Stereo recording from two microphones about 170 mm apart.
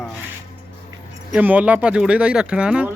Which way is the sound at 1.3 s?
10° right (ahead or behind).